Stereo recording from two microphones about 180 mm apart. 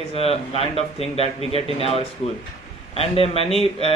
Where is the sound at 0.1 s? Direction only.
30° left (ahead or behind).